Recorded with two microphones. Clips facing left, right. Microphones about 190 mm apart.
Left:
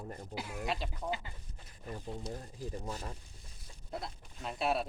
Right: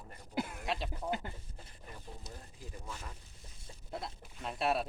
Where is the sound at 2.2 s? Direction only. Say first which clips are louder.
Left 9 dB; 35° left (ahead or behind).